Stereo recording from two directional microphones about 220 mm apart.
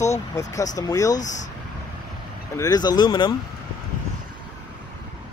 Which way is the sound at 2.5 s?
15° left (ahead or behind).